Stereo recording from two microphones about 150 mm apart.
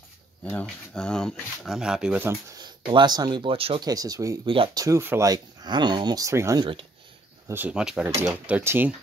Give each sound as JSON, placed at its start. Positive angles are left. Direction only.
{"t": 0.5, "sound": "speech", "side_deg": 10}
{"t": 2.5, "sound": "speech", "side_deg": -30}
{"t": 3.8, "sound": "speech", "side_deg": -25}
{"t": 4.5, "sound": "speech", "side_deg": -35}
{"t": 4.8, "sound": "speech", "side_deg": -15}
{"t": 6.6, "sound": "speech", "side_deg": -35}
{"t": 7.4, "sound": "speech", "side_deg": -10}